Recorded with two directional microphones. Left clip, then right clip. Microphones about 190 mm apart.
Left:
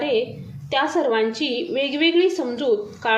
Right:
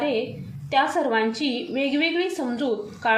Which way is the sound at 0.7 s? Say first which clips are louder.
Left 1 dB; 30° left (ahead or behind).